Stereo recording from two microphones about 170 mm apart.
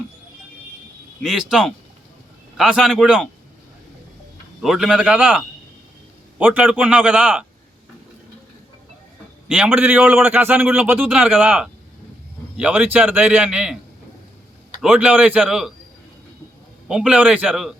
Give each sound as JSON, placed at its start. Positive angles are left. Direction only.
{"t": 1.2, "sound": "a man's voice", "side_deg": 0}
{"t": 4.6, "sound": "a man's voice", "side_deg": 0}
{"t": 6.4, "sound": "a man's voice", "side_deg": -10}
{"t": 9.5, "sound": "a man's voice", "side_deg": -10}
{"t": 14.8, "sound": "a man's voice", "side_deg": -5}
{"t": 16.9, "sound": "a man's voice", "side_deg": -5}